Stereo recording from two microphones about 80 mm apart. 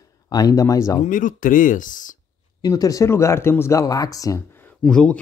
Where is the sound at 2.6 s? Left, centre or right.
Left.